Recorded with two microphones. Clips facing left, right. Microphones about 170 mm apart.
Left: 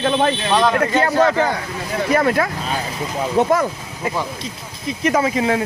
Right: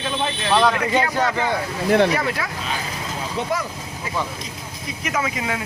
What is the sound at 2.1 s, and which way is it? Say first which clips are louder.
Speech: left 7 dB; 50° left (ahead or behind).